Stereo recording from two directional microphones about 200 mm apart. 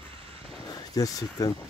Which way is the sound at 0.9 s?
20° left (ahead or behind).